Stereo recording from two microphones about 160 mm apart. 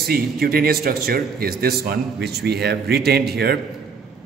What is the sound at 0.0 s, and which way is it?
A man's voice, 70° right (ahead or behind).